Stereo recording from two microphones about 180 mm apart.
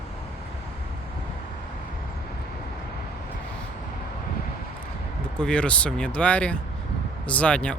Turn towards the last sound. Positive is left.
turn(degrees=5)  # may be behind; listen again after turning